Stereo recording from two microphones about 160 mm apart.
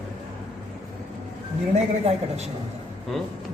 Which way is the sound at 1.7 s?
45° right (ahead or behind).